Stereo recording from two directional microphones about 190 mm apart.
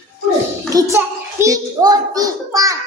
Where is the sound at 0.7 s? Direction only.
15° right (ahead or behind).